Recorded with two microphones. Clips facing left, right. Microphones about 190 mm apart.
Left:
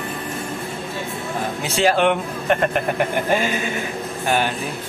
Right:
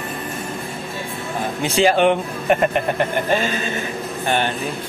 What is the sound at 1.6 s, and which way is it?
Speech, centre (ahead or behind).